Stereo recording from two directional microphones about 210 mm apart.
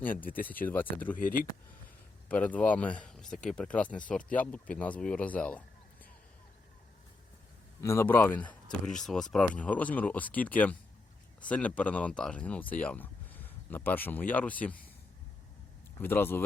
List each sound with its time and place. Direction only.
0.0 s speech: 10° left (ahead or behind)
1.1 s speech: 40° left (ahead or behind)
2.3 s speech: 5° left (ahead or behind)
7.8 s speech: 10° left (ahead or behind)
16.0 s speech: 10° left (ahead or behind)